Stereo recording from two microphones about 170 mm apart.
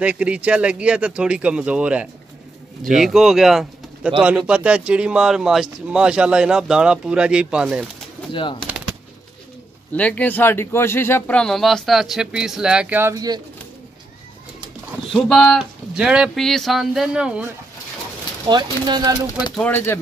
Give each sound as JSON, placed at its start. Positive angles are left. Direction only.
{"t": 0.0, "sound": "speech", "side_deg": -5}
{"t": 8.3, "sound": "speech", "side_deg": 30}
{"t": 8.6, "sound": "machine gun", "side_deg": -5}
{"t": 9.9, "sound": "speech", "side_deg": 10}
{"t": 15.1, "sound": "speech", "side_deg": 0}
{"t": 18.5, "sound": "speech", "side_deg": -25}
{"t": 19.5, "sound": "speech", "side_deg": 10}